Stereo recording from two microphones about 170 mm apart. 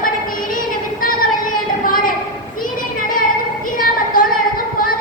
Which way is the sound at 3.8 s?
55° left (ahead or behind).